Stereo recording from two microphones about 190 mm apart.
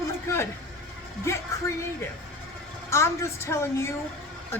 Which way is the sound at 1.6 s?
15° left (ahead or behind).